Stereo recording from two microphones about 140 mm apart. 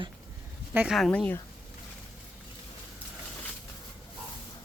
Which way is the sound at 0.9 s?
5° left (ahead or behind).